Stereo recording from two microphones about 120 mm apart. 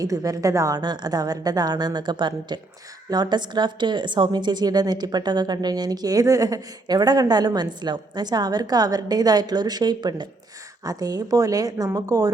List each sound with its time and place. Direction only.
0.0 s a woman's voice: 30° right (ahead or behind)